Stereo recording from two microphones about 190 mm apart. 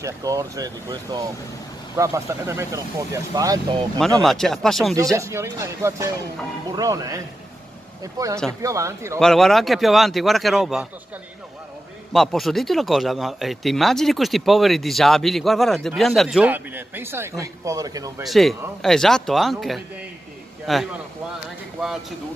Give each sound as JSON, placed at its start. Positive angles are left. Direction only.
{"t": 0.0, "sound": "speech", "side_deg": -15}
{"t": 4.2, "sound": "speech", "side_deg": 0}
{"t": 5.1, "sound": "speech", "side_deg": -15}
{"t": 9.2, "sound": "speech", "side_deg": 0}
{"t": 12.1, "sound": "speech", "side_deg": 0}
{"t": 18.2, "sound": "speech", "side_deg": 0}